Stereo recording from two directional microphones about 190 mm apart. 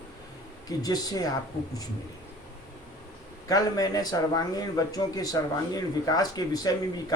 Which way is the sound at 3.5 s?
20° left (ahead or behind).